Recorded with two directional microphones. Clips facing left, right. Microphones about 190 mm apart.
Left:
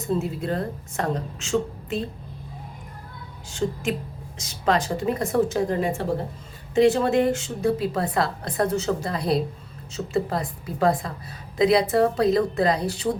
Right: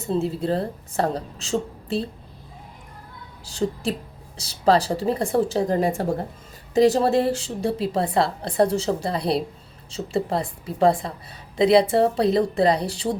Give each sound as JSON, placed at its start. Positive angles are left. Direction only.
{"t": 0.1, "sound": "a woman's voice", "side_deg": -30}
{"t": 3.4, "sound": "a woman's voice", "side_deg": -35}